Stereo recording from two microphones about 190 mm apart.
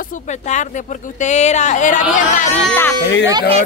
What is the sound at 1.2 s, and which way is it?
A woman's voice, 35° left (ahead or behind).